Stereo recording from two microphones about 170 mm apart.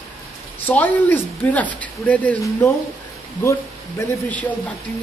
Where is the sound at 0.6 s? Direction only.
10° left (ahead or behind).